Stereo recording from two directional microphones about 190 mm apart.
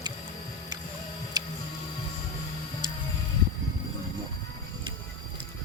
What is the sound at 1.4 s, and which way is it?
Music, 20° right (ahead or behind).